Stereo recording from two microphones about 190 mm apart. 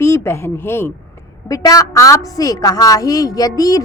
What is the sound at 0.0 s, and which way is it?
A woman's voice, 15° left (ahead or behind).